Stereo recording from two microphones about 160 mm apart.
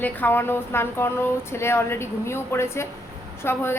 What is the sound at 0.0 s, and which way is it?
A woman's voice, 10° left (ahead or behind).